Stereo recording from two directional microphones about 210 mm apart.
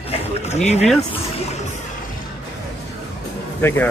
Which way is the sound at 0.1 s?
30° left (ahead or behind).